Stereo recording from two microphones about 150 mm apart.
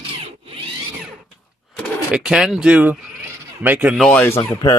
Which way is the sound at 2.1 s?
5° right (ahead or behind).